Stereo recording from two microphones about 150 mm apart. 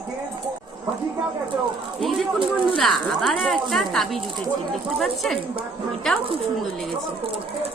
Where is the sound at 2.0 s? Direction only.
Centre (ahead or behind).